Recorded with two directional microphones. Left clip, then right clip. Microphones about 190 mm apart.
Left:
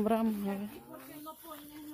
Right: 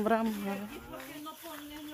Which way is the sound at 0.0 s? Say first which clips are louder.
Right 2 dB; 20° left (ahead or behind).